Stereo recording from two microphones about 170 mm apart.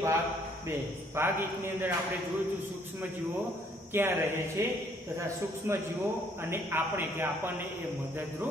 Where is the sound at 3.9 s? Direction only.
15° right (ahead or behind).